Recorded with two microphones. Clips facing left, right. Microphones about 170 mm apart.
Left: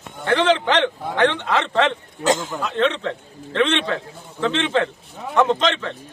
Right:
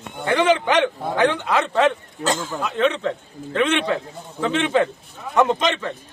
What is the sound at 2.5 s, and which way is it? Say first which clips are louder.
A man's voice: even; 10° right (ahead or behind).